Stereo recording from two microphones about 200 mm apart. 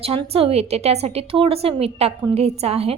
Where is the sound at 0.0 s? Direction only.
30° right (ahead or behind).